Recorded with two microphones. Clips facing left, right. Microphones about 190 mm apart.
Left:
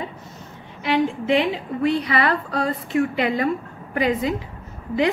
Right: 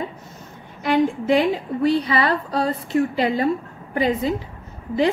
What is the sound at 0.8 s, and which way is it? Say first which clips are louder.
A woman's voice: right 2 dB; 40° right (ahead or behind).